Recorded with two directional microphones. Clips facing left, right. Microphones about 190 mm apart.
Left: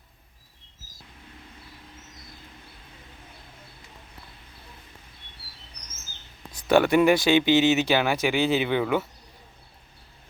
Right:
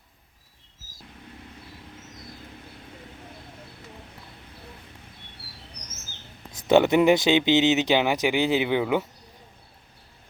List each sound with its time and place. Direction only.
6.5 s speech: 20° right (ahead or behind)